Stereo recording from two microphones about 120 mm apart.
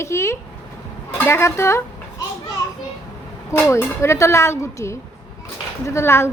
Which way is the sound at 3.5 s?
25° left (ahead or behind).